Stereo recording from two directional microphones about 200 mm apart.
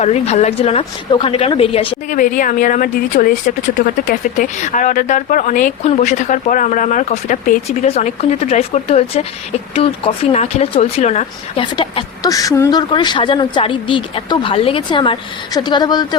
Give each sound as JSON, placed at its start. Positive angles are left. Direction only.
{"t": 0.0, "sound": "speech", "side_deg": 35}
{"t": 2.1, "sound": "speech", "side_deg": 40}